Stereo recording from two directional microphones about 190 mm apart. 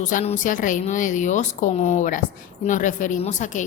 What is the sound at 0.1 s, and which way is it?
Speech, 40° left (ahead or behind).